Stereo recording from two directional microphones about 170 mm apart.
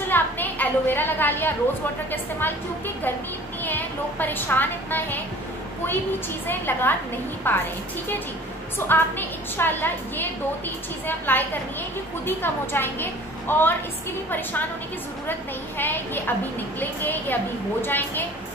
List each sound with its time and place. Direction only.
0.1 s a sound: 10° left (ahead or behind)
3.6 s a woman's voice: 10° left (ahead or behind)
6.4 s a woman's voice: 10° left (ahead or behind)
8.7 s a woman's voice: 10° left (ahead or behind)
15.8 s a woman's voice: 10° left (ahead or behind)